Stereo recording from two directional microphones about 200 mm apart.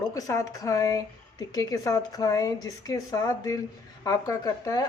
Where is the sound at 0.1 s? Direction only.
15° left (ahead or behind).